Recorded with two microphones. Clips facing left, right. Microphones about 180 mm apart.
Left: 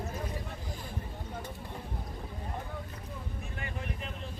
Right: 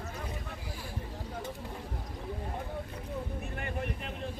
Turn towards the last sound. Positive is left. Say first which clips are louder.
# right 3 dB
turn(degrees=-50)  # may be behind; listen again after turning